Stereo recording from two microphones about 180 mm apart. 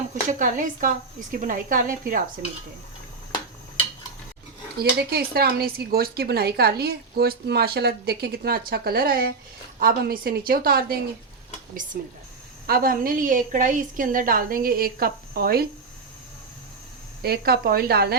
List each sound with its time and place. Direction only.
0.3 s a woman's voice: 45° right (ahead or behind)
4.8 s a woman's voice: 60° right (ahead or behind)
17.2 s speech: 60° right (ahead or behind)